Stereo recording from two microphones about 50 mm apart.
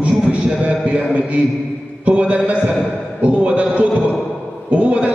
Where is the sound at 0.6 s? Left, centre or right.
Right.